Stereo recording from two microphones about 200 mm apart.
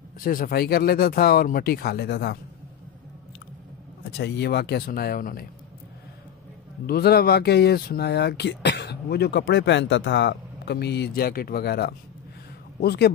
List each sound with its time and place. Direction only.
0.2 s speech: 45° left (ahead or behind)
4.2 s speech: 55° left (ahead or behind)
6.9 s speech: 50° left (ahead or behind)